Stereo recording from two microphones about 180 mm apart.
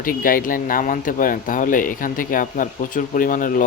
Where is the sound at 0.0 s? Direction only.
50° left (ahead or behind).